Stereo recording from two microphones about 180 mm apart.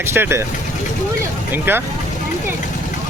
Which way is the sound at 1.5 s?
10° right (ahead or behind).